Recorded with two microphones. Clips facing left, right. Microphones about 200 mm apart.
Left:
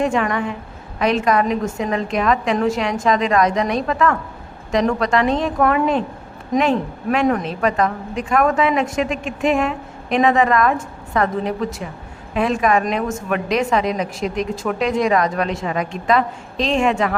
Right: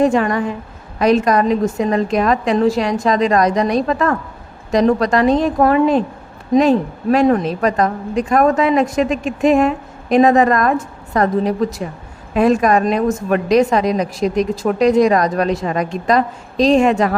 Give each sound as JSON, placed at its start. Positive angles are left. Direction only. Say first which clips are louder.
{"t": 0.0, "sound": "a woman's voice", "louder": "right 5 dB", "side_deg": -35}